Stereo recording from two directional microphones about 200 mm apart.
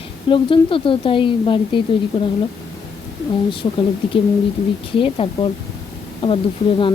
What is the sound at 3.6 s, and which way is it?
Speech, 20° left (ahead or behind).